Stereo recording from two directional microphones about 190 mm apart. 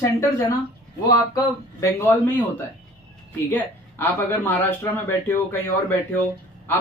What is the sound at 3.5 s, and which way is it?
Speech, 10° left (ahead or behind).